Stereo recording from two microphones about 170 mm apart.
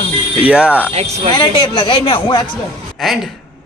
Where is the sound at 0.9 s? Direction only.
40° right (ahead or behind).